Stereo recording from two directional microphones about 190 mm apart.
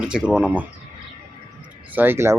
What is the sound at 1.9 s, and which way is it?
Speech, 10° right (ahead or behind).